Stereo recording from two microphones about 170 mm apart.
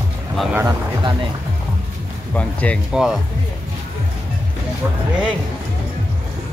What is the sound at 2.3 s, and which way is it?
Speech, 10° left (ahead or behind).